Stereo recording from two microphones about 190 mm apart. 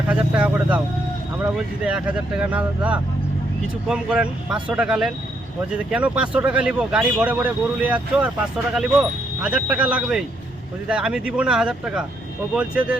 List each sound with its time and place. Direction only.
0.1 s speech: 5° right (ahead or behind)
9.4 s speech: 5° right (ahead or behind)